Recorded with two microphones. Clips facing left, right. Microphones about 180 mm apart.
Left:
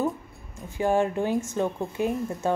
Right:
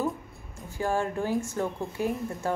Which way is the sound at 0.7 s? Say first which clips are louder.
Left 5 dB; 20° left (ahead or behind).